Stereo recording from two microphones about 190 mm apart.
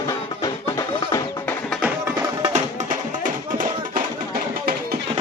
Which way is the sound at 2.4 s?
35° right (ahead or behind).